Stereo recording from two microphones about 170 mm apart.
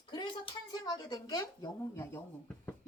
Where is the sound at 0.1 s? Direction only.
25° left (ahead or behind).